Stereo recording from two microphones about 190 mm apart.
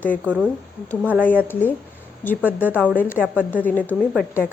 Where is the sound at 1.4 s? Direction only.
10° left (ahead or behind).